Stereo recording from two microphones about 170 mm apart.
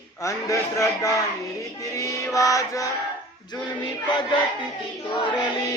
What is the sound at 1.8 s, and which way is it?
Music, 20° left (ahead or behind).